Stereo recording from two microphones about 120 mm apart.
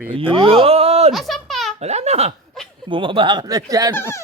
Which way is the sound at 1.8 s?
65° right (ahead or behind).